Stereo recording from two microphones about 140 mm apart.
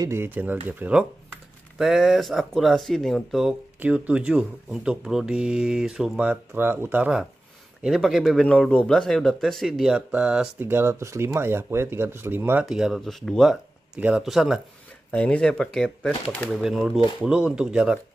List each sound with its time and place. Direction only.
0.0 s speech: 15° right (ahead or behind)
10.6 s speech: 15° right (ahead or behind)
12.6 s speech: 5° right (ahead or behind)
13.9 s speech: 10° right (ahead or behind)
15.0 s speech: 10° left (ahead or behind)